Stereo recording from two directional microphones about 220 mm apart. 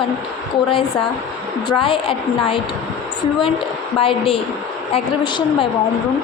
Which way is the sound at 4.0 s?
25° left (ahead or behind).